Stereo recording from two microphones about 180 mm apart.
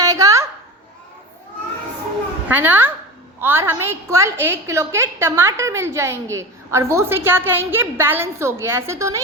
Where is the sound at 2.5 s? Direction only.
10° right (ahead or behind).